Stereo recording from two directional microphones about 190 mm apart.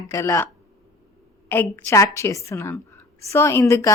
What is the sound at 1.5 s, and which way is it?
Speech, 10° left (ahead or behind).